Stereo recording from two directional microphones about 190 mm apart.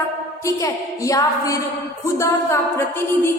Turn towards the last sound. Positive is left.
turn(degrees=15)  # may be behind; listen again after turning